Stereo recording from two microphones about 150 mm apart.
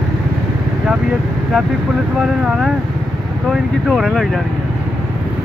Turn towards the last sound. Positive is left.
turn(degrees=0)  # may be behind; listen again after turning